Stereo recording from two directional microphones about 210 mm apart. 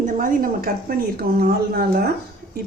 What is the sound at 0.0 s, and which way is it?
A woman's voice, 40° right (ahead or behind).